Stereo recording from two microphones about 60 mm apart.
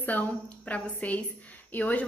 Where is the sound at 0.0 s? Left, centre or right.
Left.